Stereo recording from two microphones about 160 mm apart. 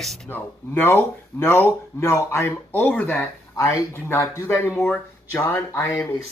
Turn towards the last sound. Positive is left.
turn(degrees=15)  # may be behind; listen again after turning